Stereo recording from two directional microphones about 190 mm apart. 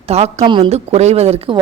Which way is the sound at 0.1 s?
35° right (ahead or behind).